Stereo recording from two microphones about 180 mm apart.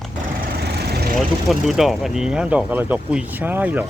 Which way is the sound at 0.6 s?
65° right (ahead or behind).